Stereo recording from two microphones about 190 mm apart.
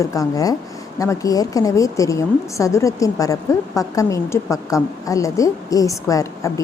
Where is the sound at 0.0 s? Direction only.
15° left (ahead or behind).